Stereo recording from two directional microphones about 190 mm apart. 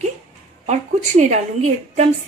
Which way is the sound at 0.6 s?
40° right (ahead or behind).